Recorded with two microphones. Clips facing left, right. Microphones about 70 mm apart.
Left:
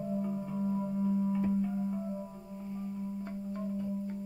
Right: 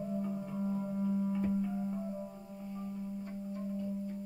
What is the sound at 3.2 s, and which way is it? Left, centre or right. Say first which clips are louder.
Music: left 3 dB; left.